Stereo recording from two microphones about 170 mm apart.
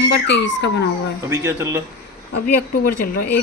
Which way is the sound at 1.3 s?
15° right (ahead or behind).